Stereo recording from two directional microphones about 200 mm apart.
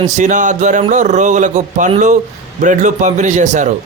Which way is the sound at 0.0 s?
40° right (ahead or behind).